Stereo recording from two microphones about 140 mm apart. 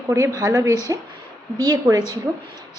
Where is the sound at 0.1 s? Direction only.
25° right (ahead or behind).